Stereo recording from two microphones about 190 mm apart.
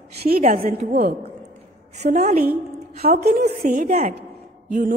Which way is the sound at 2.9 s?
55° right (ahead or behind).